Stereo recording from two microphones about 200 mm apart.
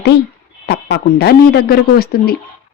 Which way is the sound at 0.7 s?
55° left (ahead or behind).